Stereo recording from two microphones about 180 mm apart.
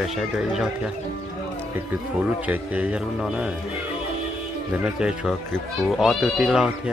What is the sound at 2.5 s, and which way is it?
Speech, 10° right (ahead or behind).